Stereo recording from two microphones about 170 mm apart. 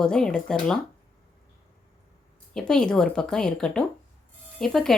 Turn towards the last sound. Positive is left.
turn(degrees=0)  # may be behind; listen again after turning